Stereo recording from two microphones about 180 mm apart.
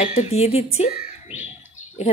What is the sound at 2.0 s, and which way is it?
Speech, 35° left (ahead or behind).